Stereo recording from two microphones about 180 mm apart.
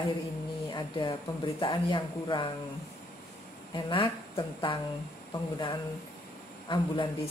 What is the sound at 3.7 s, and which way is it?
A woman's voice, 25° left (ahead or behind).